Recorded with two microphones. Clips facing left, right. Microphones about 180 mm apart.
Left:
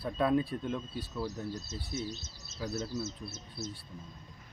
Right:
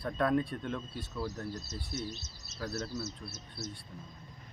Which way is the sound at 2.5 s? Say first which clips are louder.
Left 1 dB; 5° left (ahead or behind).